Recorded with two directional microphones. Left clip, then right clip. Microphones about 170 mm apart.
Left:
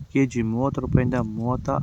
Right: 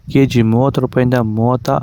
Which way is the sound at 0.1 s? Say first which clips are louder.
Right 10 dB; 45° right (ahead or behind).